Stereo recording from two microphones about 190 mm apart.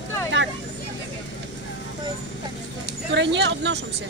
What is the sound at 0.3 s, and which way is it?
Vehicle, 70° right (ahead or behind).